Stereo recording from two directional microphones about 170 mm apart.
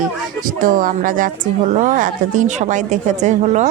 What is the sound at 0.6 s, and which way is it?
Speech, 50° right (ahead or behind).